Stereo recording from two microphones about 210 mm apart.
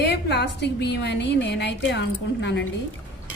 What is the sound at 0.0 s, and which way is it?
A woman's voice, 55° left (ahead or behind).